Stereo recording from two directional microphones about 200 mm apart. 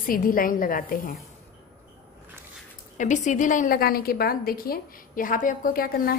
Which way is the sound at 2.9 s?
35° left (ahead or behind).